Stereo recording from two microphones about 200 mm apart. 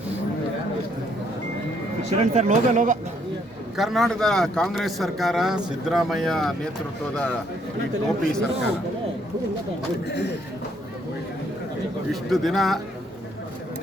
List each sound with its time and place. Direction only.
2.1 s speech: 35° right (ahead or behind)
3.8 s a man's voice: centre (ahead or behind)
8.0 s a man's voice: 5° left (ahead or behind)
10.1 s a man's voice: 60° left (ahead or behind)
12.3 s a man's voice: centre (ahead or behind)